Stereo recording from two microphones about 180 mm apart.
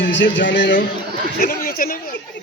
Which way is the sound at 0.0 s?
85° left.